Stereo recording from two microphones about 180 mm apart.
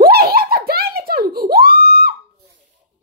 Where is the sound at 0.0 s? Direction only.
55° right (ahead or behind).